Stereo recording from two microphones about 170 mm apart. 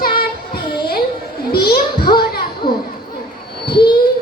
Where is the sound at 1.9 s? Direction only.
30° left (ahead or behind).